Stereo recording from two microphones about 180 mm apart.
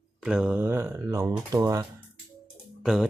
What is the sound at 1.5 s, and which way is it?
Speech, 20° right (ahead or behind).